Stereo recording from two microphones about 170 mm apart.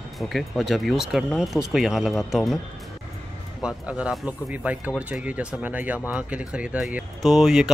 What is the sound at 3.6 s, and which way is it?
Speech, 5° right (ahead or behind).